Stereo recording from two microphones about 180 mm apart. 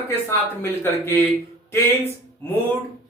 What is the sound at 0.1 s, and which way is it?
A man's voice, 15° left (ahead or behind).